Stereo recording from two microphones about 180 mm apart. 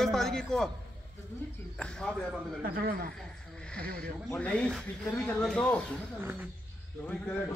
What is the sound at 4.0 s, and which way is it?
Speech, 5° left (ahead or behind).